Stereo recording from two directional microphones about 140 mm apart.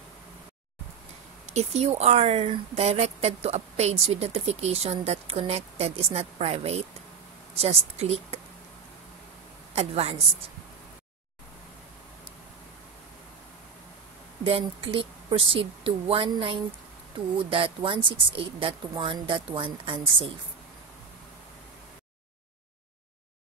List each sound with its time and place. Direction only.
1.4 s speech: 50° right (ahead or behind)
9.8 s speech: 50° right (ahead or behind)
14.4 s speech: 40° right (ahead or behind)